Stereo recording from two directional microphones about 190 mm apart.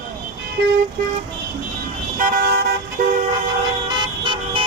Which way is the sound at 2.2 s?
50° right (ahead or behind).